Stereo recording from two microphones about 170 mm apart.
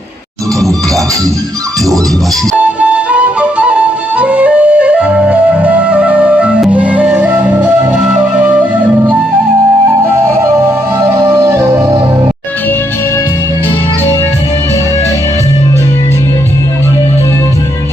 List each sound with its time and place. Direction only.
2.5 s music: 5° right (ahead or behind)
4.2 s flute: 5° right (ahead or behind)
11.2 s music: 15° right (ahead or behind)